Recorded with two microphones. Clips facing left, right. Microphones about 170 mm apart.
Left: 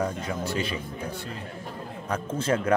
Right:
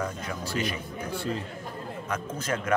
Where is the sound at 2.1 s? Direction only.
30° left (ahead or behind).